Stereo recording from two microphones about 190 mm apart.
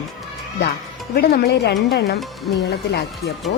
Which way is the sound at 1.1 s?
55° left (ahead or behind).